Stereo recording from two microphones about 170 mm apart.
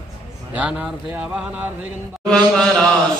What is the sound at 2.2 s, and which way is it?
Speech, 5° left (ahead or behind).